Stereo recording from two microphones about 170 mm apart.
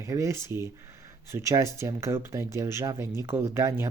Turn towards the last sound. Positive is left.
turn(degrees=-15)  # may be behind; listen again after turning